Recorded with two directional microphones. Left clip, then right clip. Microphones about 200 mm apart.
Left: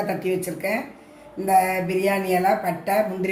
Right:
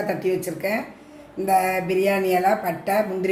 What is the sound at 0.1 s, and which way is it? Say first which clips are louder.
Speech: right 1 dB; 5° right (ahead or behind).